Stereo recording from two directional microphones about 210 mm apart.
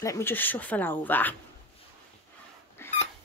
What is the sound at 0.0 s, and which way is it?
A woman's voice, 10° left (ahead or behind).